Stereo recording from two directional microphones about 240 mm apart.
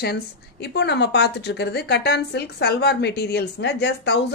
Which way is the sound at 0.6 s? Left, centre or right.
Left.